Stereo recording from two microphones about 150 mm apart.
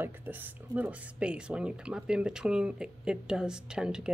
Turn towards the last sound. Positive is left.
turn(degrees=-5)  # may be behind; listen again after turning